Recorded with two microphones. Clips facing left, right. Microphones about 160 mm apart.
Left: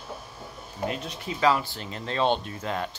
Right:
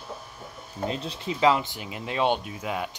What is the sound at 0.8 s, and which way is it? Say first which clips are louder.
Speech: right 1 dB; 30° right (ahead or behind).